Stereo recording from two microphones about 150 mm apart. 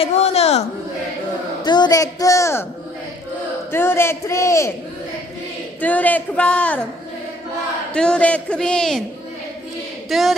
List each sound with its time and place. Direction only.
0.0 s a man's voice: 45° left (ahead or behind)
1.6 s a woman's voice: 30° left (ahead or behind)
3.7 s speech: 15° left (ahead or behind)
5.8 s speech: 10° left (ahead or behind)
7.9 s a man's voice: 5° left (ahead or behind)
10.0 s speech: centre (ahead or behind)